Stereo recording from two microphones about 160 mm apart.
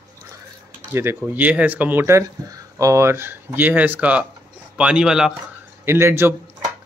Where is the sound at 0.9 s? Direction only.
15° right (ahead or behind).